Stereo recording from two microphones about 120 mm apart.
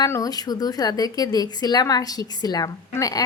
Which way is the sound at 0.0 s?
30° left (ahead or behind).